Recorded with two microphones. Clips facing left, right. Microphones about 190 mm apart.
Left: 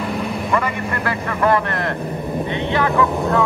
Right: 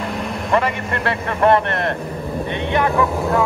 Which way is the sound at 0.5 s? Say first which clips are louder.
Right 4 dB; 30° right (ahead or behind).